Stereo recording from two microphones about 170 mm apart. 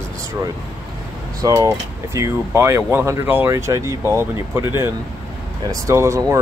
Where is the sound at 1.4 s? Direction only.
20° right (ahead or behind).